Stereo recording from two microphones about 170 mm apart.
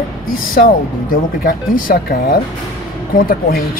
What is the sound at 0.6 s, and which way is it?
Speech, 55° left (ahead or behind).